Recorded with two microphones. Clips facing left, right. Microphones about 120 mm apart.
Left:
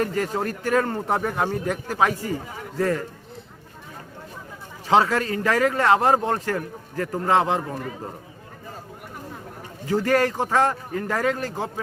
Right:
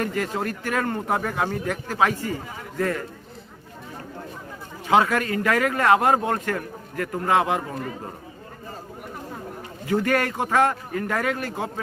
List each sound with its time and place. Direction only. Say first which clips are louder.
0.0 s a man's voice: left 2 dB; 30° left (ahead or behind)
1.2 s speech: left 1 dB; 15° left (ahead or behind)
2.7 s a man's voice: left 2 dB; 25° left (ahead or behind)
4.9 s a man's voice: even; 30° left (ahead or behind)
7.6 s a man's voice: even; centre (ahead or behind)
10.0 s a man's voice: left 4 dB; 30° left (ahead or behind)